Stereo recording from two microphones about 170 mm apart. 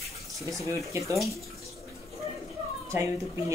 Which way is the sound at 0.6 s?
20° right (ahead or behind).